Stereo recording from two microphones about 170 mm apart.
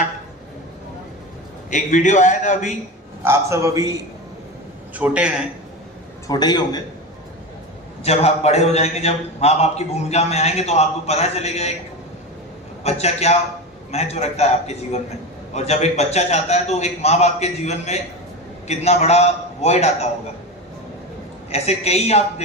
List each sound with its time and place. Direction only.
1.7 s a man's voice: 45° left (ahead or behind)
3.2 s a man's voice: 15° right (ahead or behind)
4.9 s a man's voice: 10° right (ahead or behind)
6.2 s a man's voice: 25° left (ahead or behind)
8.0 s a man's voice: 40° left (ahead or behind)
12.8 s a man's voice: 40° left (ahead or behind)
21.5 s a man's voice: 40° left (ahead or behind)